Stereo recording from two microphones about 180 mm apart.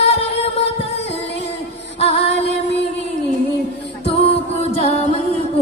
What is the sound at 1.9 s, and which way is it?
Female singing, 35° left (ahead or behind).